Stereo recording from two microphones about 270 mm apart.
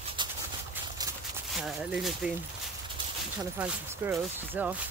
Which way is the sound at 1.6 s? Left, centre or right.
Centre.